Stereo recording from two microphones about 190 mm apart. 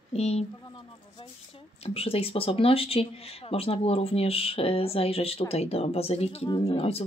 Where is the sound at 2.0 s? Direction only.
30° left (ahead or behind).